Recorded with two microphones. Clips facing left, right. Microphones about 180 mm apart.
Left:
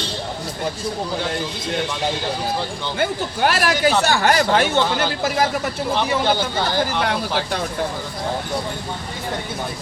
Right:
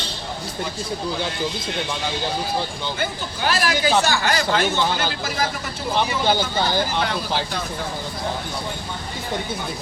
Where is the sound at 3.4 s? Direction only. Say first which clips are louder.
Left 3 dB; 60° left (ahead or behind).